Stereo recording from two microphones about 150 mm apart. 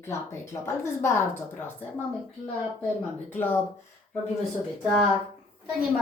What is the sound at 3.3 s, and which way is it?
Speech, 15° left (ahead or behind).